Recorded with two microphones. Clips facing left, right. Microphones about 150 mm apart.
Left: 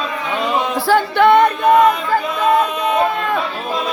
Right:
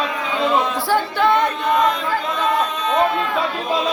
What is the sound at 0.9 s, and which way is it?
A capella, 65° left (ahead or behind).